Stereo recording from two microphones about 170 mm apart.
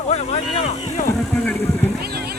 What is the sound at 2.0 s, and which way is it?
Vehicle, 65° right (ahead or behind).